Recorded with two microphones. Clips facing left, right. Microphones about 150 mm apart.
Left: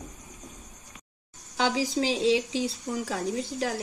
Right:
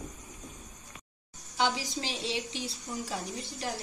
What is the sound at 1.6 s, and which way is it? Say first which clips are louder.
A woman's voice: left 5 dB; 90° left.